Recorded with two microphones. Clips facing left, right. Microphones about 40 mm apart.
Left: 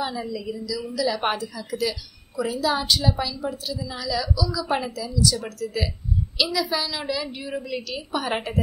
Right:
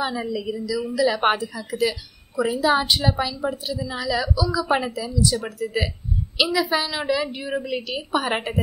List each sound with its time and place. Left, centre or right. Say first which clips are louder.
0.0 s a woman's voice: right 3 dB; right
8.3 s a woman's voice: right 2 dB; centre